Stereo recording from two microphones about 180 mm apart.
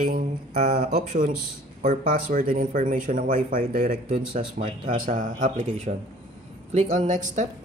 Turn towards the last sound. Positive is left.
turn(degrees=-45)  # may be behind; listen again after turning